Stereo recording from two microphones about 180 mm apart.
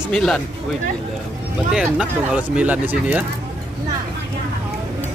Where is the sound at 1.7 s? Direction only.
5° right (ahead or behind).